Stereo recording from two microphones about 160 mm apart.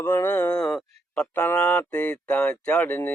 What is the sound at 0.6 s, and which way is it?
Speech, 5° left (ahead or behind).